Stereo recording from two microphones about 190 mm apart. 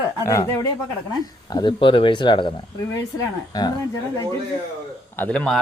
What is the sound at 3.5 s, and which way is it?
Speech, 20° left (ahead or behind).